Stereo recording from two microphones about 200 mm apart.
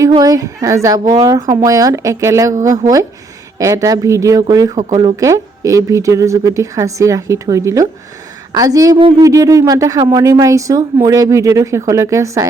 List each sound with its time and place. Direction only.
0.1 s speech: 20° right (ahead or behind)